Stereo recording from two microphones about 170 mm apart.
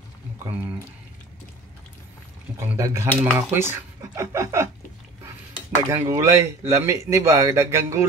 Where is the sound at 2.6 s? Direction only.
15° right (ahead or behind).